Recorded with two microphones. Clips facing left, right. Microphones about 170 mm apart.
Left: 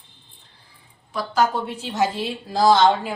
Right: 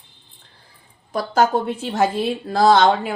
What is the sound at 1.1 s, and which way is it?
A woman's voice, 45° right (ahead or behind).